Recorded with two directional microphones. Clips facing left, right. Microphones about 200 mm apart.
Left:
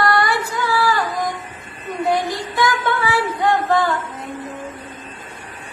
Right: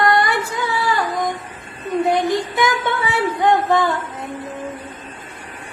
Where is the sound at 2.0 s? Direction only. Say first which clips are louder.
Right 2 dB; 20° right (ahead or behind).